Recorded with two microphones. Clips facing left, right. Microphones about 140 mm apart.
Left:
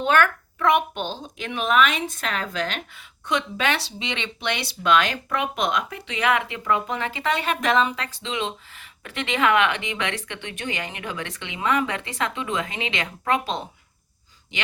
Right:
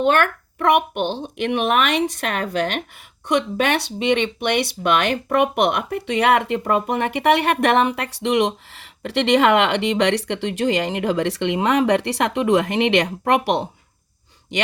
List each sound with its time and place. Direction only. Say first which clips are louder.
0.0 s a woman's voice: right 3 dB; 50° right (ahead or behind); by 13.7 s 75° right (ahead or behind)